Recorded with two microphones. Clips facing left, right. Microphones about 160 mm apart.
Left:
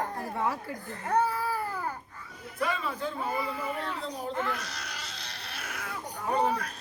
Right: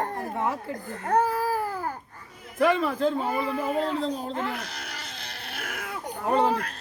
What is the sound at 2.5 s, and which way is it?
Speech, 70° right (ahead or behind).